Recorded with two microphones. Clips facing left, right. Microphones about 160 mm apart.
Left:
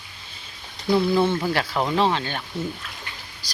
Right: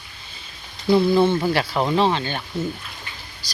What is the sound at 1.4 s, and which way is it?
Speech, 5° right (ahead or behind).